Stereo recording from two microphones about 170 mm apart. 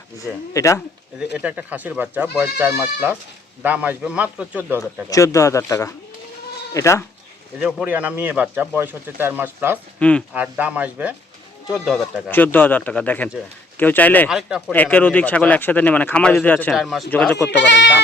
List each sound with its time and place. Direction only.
0.2 s speech: 20° left (ahead or behind)
1.4 s speech: 10° right (ahead or behind)
5.0 s speech: 20° left (ahead or behind)
7.6 s speech: 10° right (ahead or behind)
10.0 s speech: 5° left (ahead or behind)
10.3 s speech: 10° right (ahead or behind)
12.3 s speech: 10° left (ahead or behind)
14.3 s speech: 5° right (ahead or behind)
14.7 s speech: 10° left (ahead or behind)
17.5 s speech: 90° left